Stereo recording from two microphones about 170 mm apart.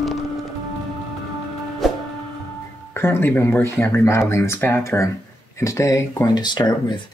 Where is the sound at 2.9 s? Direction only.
15° left (ahead or behind).